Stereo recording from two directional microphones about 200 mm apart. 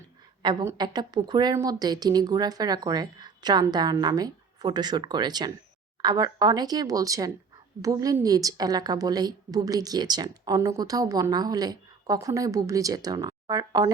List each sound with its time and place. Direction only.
0.4 s a woman's voice: 15° right (ahead or behind)